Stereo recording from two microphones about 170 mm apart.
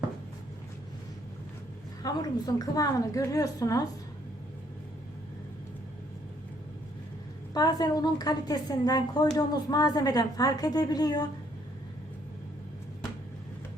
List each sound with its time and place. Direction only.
2.0 s a woman's voice: 20° left (ahead or behind)
7.5 s a woman's voice: 20° left (ahead or behind)